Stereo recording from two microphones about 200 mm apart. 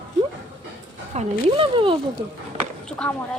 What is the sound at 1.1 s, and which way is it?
Speech, 25° right (ahead or behind).